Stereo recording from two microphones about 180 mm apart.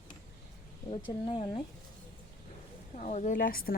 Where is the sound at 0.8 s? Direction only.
30° left (ahead or behind).